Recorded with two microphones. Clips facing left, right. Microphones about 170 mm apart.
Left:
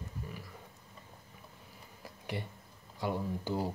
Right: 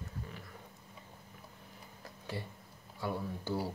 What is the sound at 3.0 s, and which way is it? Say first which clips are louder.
Speech: left 3 dB; 15° left (ahead or behind).